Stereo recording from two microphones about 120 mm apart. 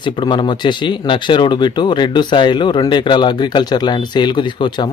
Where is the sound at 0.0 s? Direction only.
40° left (ahead or behind).